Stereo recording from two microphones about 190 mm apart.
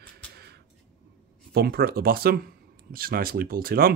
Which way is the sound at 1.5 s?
55° right (ahead or behind).